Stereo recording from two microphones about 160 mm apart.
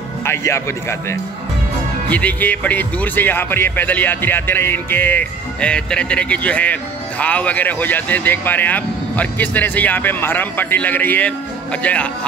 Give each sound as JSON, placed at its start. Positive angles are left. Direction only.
{"t": 0.2, "sound": "speech", "side_deg": 15}
{"t": 2.0, "sound": "speech", "side_deg": 10}